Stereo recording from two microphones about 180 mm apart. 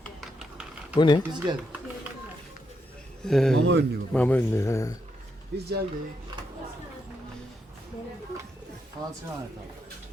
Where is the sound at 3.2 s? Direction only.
5° left (ahead or behind).